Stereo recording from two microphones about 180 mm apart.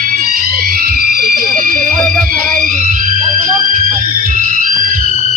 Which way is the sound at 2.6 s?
45° right (ahead or behind).